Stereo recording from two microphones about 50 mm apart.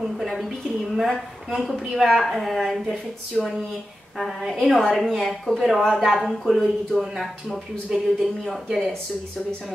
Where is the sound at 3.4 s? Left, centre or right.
Centre.